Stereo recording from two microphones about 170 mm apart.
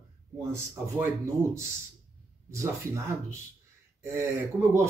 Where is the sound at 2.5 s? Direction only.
15° right (ahead or behind).